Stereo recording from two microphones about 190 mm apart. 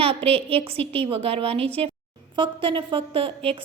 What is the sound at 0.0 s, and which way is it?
A woman's voice, 30° right (ahead or behind).